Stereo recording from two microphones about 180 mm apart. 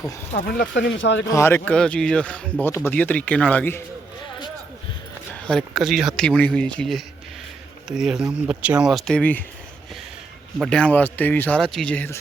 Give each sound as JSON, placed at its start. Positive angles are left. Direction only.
{"t": 0.3, "sound": "speech", "side_deg": 65}
{"t": 1.2, "sound": "speech", "side_deg": 15}
{"t": 5.5, "sound": "speech", "side_deg": 0}
{"t": 10.6, "sound": "speech", "side_deg": 5}